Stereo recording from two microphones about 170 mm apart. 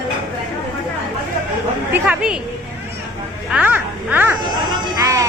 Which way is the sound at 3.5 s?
10° right (ahead or behind).